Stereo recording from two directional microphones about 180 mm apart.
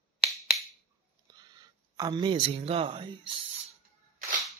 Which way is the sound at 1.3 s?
25° right (ahead or behind).